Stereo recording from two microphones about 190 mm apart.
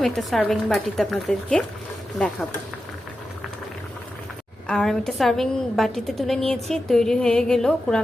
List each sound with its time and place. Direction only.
0.0 s a woman's voice: centre (ahead or behind)
4.6 s a woman's voice: 5° left (ahead or behind)